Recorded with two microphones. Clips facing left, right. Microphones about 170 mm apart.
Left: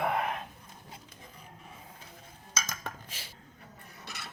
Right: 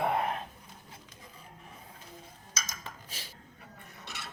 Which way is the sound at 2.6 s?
55° left (ahead or behind).